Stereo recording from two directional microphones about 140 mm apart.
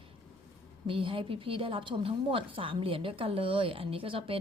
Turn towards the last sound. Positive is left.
turn(degrees=-40)  # may be behind; listen again after turning